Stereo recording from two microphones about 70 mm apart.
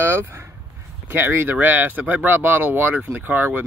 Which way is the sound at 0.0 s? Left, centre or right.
Right.